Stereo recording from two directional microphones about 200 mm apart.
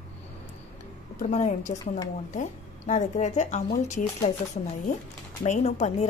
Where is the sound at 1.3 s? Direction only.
35° left (ahead or behind).